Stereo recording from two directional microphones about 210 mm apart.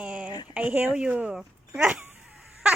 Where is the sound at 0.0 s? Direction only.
5° right (ahead or behind).